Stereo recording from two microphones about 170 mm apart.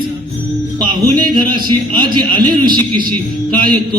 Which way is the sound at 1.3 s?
25° right (ahead or behind).